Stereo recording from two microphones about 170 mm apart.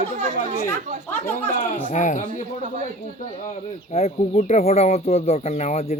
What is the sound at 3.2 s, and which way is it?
Speech, 45° left (ahead or behind).